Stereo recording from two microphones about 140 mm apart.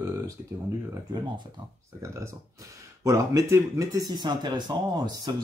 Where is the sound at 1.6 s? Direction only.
35° right (ahead or behind).